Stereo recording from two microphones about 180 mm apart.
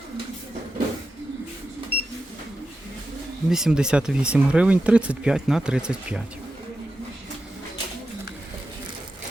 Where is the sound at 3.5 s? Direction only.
5° right (ahead or behind).